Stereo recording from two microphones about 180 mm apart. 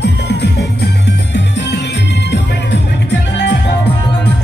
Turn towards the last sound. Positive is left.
turn(degrees=75)  # may be behind; listen again after turning